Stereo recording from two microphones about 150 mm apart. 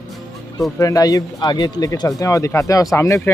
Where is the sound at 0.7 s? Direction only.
20° left (ahead or behind).